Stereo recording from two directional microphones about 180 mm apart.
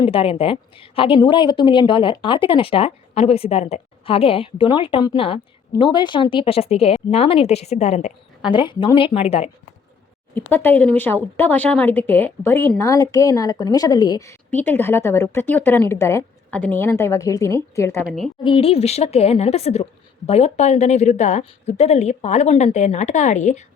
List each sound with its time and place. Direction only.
0.0 s a woman's voice: 30° left (ahead or behind)
8.5 s speech: 25° left (ahead or behind)
10.3 s speech: 10° left (ahead or behind)
18.0 s a woman's voice: centre (ahead or behind)
18.4 s a woman's voice: 30° left (ahead or behind)